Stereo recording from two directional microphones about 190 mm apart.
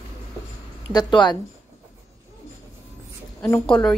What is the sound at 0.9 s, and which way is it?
Speech, 25° left (ahead or behind).